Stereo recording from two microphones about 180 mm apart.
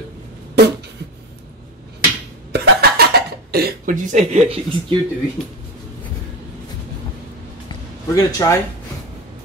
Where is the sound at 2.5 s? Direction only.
60° right (ahead or behind).